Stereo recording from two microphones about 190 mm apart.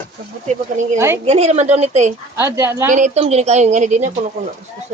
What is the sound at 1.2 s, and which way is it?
Speech, 35° right (ahead or behind).